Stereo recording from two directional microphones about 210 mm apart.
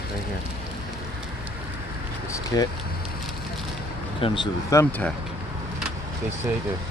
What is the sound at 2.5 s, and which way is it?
Speech, 15° left (ahead or behind).